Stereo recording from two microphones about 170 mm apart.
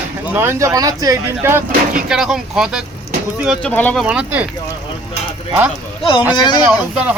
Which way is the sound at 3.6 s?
10° left (ahead or behind).